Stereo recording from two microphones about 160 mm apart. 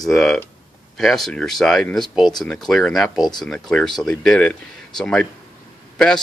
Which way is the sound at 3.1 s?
25° left (ahead or behind).